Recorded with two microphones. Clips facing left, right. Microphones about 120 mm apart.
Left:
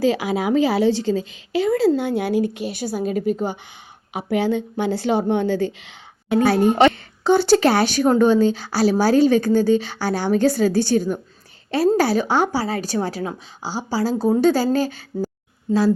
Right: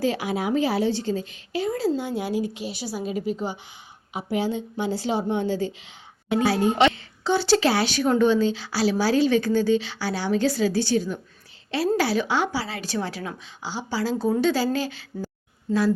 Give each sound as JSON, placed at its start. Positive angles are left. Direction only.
{"t": 0.0, "sound": "a woman's voice", "side_deg": 90}
{"t": 4.1, "sound": "a woman's voice", "side_deg": 65}